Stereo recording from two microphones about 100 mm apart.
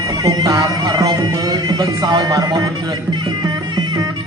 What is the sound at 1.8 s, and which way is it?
Speech, 45° right (ahead or behind).